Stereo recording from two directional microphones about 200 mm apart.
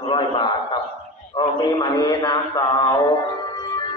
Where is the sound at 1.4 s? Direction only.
20° left (ahead or behind).